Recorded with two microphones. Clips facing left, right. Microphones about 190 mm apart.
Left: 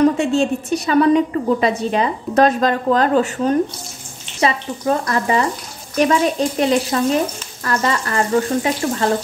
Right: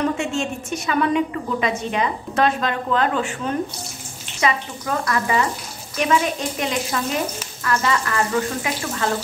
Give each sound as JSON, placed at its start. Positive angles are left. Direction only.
{"t": 0.0, "sound": "a woman's voice", "side_deg": 35}